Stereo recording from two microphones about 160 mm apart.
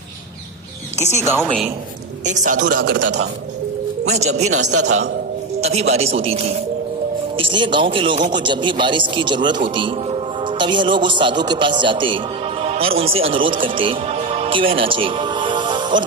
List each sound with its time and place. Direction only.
0.9 s speech: 45° left (ahead or behind)
1.4 s a woman's voice: centre (ahead or behind)
2.2 s a man's voice: 50° right (ahead or behind); by 3.2 s 65° right (ahead or behind)
4.0 s speech: 45° right (ahead or behind)
5.5 s a man's voice: 40° right (ahead or behind)